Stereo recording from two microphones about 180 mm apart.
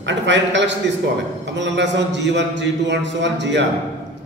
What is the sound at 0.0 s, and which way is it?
A man's voice, 80° right.